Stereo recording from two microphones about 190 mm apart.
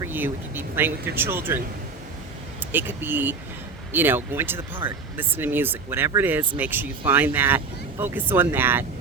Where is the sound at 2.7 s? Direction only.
10° right (ahead or behind).